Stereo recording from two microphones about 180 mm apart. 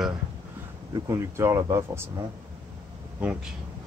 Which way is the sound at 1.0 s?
20° right (ahead or behind).